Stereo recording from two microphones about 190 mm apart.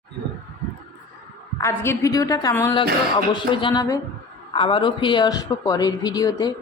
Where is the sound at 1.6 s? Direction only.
15° left (ahead or behind).